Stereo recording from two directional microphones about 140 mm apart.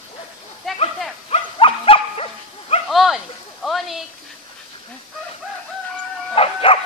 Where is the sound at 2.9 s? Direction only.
Centre (ahead or behind).